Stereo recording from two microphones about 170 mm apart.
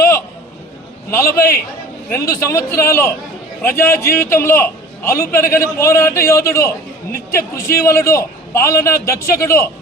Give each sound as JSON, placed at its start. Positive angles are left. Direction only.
{"t": 1.1, "sound": "a man's voice", "side_deg": 15}